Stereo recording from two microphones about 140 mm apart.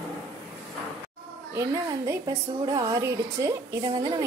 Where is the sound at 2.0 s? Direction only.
25° right (ahead or behind).